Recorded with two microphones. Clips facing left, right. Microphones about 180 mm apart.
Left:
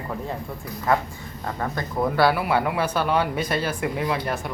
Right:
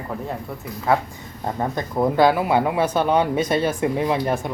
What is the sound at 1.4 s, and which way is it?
Speech, 20° right (ahead or behind).